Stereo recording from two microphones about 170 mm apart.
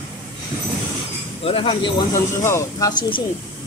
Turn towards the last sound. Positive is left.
turn(degrees=20)  # may be behind; listen again after turning